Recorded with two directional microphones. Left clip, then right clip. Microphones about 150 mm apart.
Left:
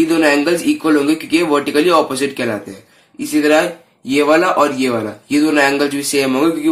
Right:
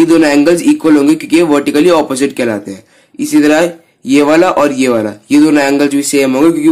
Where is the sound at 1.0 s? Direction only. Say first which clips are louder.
Right 6 dB; 45° right (ahead or behind).